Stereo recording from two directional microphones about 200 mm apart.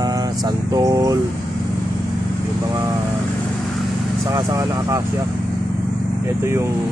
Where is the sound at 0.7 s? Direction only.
20° right (ahead or behind).